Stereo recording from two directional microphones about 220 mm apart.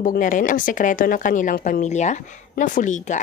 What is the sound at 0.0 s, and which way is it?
A woman's voice, 40° left (ahead or behind).